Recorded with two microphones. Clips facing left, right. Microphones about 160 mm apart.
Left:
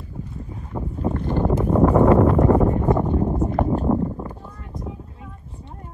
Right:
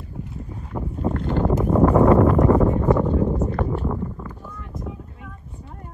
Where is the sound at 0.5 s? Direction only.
5° left (ahead or behind).